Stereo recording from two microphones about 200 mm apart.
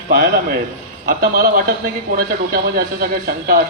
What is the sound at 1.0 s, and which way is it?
A man's voice, 45° right (ahead or behind).